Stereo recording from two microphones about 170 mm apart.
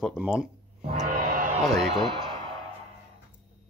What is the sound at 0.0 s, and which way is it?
Speech, centre (ahead or behind).